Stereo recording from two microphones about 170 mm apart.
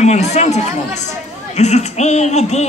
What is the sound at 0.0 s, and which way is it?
A man's voice, 40° left (ahead or behind).